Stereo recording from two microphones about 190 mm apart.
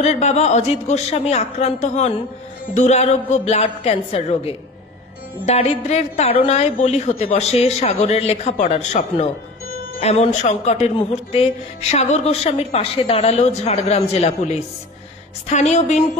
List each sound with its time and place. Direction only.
0.0 s speech: 35° left (ahead or behind)